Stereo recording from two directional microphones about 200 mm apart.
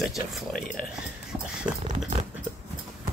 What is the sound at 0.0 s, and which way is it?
Speech, centre (ahead or behind).